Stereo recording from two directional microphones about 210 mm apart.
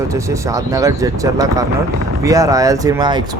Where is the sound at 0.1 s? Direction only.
15° right (ahead or behind).